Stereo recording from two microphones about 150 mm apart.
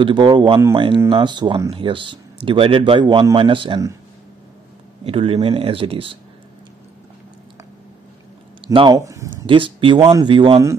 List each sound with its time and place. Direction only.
0.0 s speech: 30° right (ahead or behind)
5.0 s speech: 40° right (ahead or behind)
8.9 s speech: 20° right (ahead or behind)
9.5 s speech: 35° right (ahead or behind)